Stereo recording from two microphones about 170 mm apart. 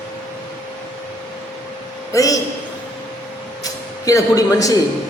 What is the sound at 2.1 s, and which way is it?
Speech, 20° left (ahead or behind).